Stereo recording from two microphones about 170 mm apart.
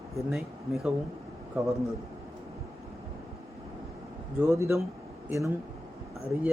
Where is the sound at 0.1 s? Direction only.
Centre (ahead or behind).